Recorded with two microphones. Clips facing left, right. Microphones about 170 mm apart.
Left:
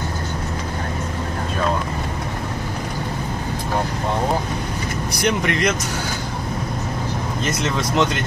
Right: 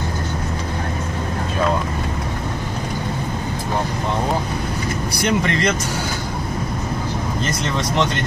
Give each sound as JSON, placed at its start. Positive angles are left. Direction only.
{"t": 5.4, "sound": "speech", "side_deg": 0}